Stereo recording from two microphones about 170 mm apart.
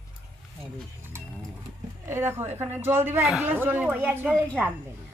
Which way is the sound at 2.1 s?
15° right (ahead or behind).